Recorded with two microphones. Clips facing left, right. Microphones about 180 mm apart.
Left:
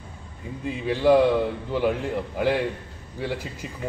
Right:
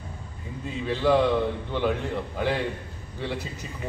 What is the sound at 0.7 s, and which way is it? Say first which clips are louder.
Speech: left 4 dB; 10° left (ahead or behind).